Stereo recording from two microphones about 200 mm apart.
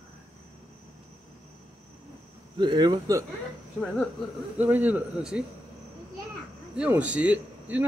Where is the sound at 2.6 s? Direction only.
20° right (ahead or behind).